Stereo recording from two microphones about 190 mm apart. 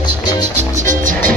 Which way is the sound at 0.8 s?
45° right (ahead or behind).